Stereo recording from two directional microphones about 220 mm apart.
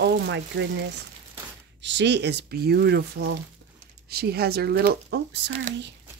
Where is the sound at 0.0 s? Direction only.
50° right (ahead or behind).